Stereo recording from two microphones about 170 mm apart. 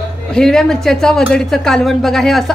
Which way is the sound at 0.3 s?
5° left (ahead or behind).